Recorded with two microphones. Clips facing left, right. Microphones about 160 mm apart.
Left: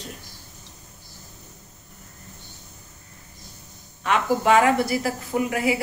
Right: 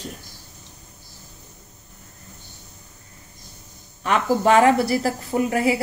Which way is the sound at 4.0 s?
40° right (ahead or behind).